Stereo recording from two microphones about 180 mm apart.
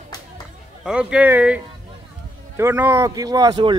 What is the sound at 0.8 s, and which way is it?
Speech, 5° right (ahead or behind).